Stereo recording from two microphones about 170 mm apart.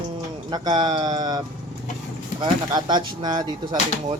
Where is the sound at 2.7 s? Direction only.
25° right (ahead or behind).